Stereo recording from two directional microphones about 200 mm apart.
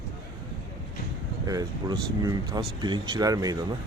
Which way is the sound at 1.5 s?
20° right (ahead or behind).